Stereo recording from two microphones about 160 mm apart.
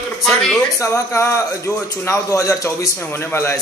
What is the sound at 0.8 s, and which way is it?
Speech, 20° left (ahead or behind).